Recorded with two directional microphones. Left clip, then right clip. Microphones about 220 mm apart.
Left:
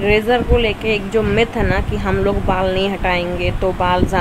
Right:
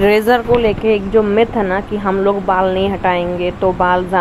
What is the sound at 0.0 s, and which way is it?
Speech, 15° right (ahead or behind).